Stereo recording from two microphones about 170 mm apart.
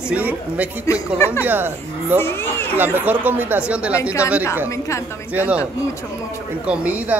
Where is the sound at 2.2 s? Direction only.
15° left (ahead or behind).